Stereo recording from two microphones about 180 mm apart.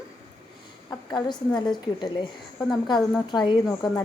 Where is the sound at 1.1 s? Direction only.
25° left (ahead or behind).